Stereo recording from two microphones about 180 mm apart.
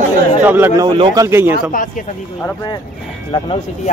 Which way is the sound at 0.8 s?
25° right (ahead or behind).